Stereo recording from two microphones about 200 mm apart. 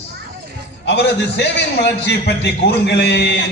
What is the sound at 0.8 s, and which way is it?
Music, 60° left (ahead or behind).